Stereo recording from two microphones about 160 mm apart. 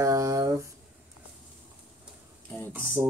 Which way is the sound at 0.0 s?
20° right (ahead or behind).